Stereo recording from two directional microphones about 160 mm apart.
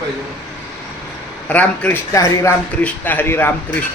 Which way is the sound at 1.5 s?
10° left (ahead or behind).